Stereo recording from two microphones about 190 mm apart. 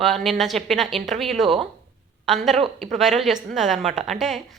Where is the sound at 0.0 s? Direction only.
Centre (ahead or behind).